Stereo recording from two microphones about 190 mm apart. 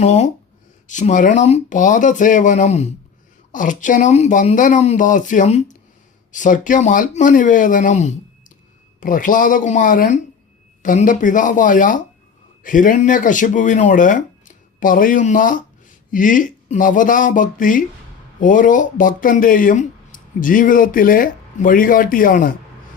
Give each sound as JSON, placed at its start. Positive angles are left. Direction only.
{"t": 0.0, "sound": "speech", "side_deg": 35}